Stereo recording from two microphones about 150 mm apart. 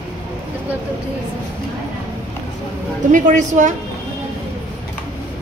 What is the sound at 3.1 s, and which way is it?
Speech, 55° right (ahead or behind).